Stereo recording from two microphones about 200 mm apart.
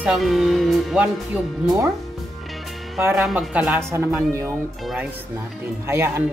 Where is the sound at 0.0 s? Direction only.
Centre (ahead or behind).